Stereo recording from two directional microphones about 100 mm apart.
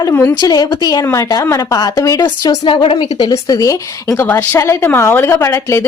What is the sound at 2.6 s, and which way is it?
Speech, 60° left (ahead or behind).